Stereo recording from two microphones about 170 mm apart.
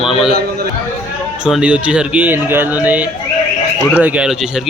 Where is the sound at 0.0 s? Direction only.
Centre (ahead or behind).